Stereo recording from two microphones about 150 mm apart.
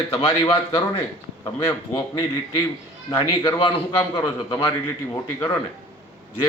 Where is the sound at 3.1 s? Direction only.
20° left (ahead or behind).